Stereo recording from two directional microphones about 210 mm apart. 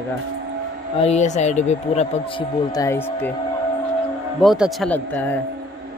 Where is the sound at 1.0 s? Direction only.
30° left (ahead or behind); by 3.3 s 10° left (ahead or behind).